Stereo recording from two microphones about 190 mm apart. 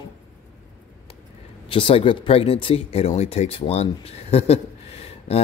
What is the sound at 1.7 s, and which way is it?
Speech, 30° left (ahead or behind).